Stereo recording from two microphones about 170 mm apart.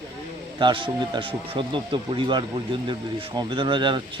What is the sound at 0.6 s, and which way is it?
Speech, 30° right (ahead or behind).